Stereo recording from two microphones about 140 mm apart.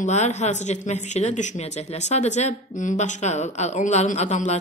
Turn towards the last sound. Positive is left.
turn(degrees=55)  # may be behind; listen again after turning